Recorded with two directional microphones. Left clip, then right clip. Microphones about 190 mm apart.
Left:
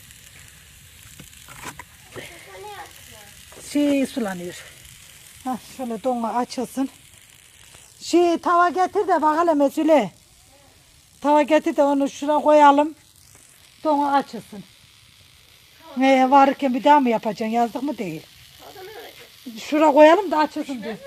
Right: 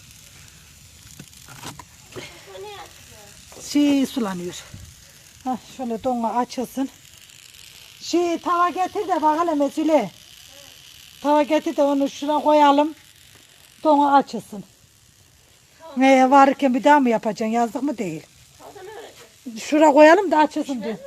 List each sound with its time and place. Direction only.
1.8 s a sound: 10° right (ahead or behind)
3.7 s speech: 15° right (ahead or behind)
5.4 s speech: 5° left (ahead or behind)
8.0 s speech: 25° left (ahead or behind)
11.2 s speech: 15° left (ahead or behind)
13.8 s speech: 15° right (ahead or behind)
16.0 s speech: centre (ahead or behind)
19.5 s speech: 5° right (ahead or behind)